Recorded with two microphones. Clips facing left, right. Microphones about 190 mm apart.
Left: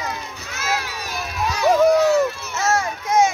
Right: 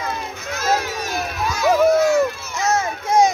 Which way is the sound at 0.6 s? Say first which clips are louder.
Right 5 dB; 40° right (ahead or behind).